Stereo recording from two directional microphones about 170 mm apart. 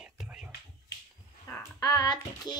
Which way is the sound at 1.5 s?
20° left (ahead or behind).